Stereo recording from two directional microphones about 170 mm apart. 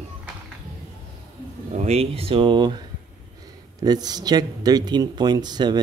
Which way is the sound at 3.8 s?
25° right (ahead or behind).